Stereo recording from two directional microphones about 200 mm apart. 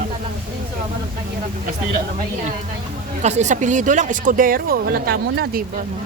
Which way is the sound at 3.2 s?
35° right (ahead or behind).